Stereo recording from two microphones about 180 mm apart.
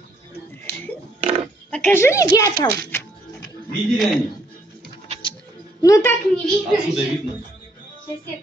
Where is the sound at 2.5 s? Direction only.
60° right (ahead or behind).